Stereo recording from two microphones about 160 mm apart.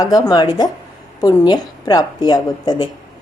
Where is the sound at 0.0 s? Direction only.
25° left (ahead or behind).